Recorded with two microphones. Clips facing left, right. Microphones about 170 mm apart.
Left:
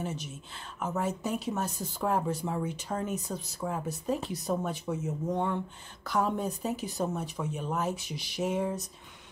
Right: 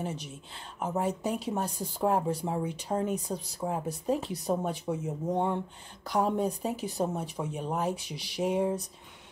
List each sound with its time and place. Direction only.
0.0 s speech: 30° right (ahead or behind)